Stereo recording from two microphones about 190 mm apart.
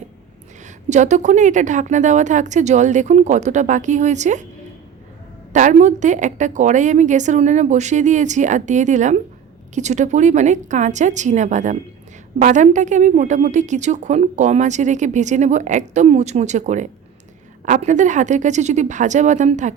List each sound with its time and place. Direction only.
0.6 s a woman's voice: 40° right (ahead or behind)
5.5 s a woman's voice: 40° right (ahead or behind)